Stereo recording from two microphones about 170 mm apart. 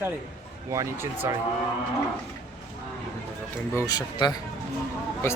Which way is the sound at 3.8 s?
25° left (ahead or behind).